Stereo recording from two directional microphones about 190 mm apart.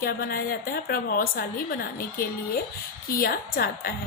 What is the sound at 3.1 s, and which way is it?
Speech, 50° left (ahead or behind).